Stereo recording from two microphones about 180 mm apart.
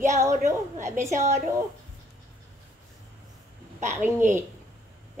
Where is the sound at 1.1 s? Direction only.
40° right (ahead or behind).